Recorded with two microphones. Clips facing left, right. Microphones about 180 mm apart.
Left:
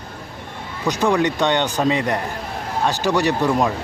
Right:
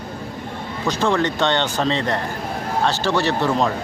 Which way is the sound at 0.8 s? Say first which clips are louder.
Left 2 dB; 15° left (ahead or behind).